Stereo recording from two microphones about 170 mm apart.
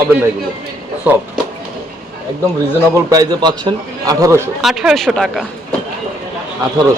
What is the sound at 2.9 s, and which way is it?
A man's voice, 20° right (ahead or behind).